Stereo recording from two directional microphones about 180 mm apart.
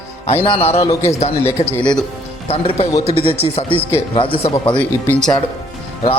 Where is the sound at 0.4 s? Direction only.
30° left (ahead or behind).